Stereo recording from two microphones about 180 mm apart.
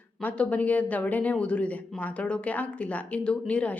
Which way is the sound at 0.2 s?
10° left (ahead or behind).